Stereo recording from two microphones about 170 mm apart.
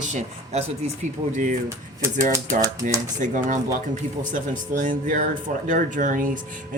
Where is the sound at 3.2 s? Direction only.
50° right (ahead or behind).